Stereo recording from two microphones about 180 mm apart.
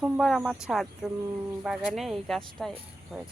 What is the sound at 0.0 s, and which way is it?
Speech, centre (ahead or behind).